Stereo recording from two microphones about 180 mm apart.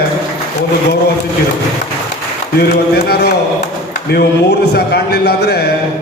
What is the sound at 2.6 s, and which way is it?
A man's voice, 65° left (ahead or behind).